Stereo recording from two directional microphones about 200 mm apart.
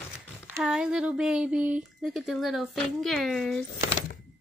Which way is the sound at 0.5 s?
5° right (ahead or behind).